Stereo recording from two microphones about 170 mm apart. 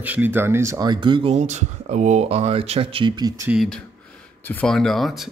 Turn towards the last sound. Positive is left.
turn(degrees=0)  # may be behind; listen again after turning